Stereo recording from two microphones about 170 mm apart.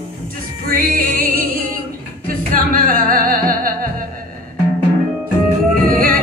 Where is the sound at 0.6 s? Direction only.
55° right (ahead or behind).